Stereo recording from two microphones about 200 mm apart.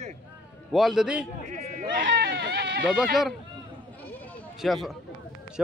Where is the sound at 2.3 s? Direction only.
50° right (ahead or behind).